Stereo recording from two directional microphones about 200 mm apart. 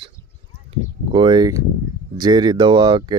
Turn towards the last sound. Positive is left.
turn(degrees=-20)  # may be behind; listen again after turning